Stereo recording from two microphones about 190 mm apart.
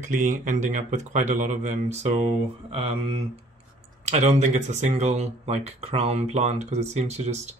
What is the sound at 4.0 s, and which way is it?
Speech, 35° right (ahead or behind).